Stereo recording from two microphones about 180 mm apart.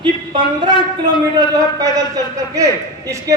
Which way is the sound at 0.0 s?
25° right (ahead or behind).